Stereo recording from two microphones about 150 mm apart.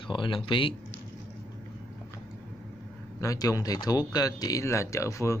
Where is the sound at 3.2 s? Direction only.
25° left (ahead or behind).